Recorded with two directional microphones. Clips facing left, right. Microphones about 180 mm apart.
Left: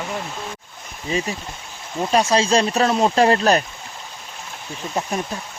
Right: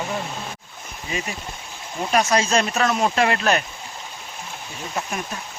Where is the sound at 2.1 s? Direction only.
30° left (ahead or behind).